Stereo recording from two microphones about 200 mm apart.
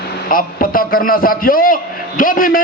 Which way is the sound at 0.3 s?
45° left (ahead or behind).